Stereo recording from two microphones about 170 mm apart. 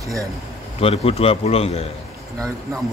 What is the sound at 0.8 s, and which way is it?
A man's voice, 35° left (ahead or behind).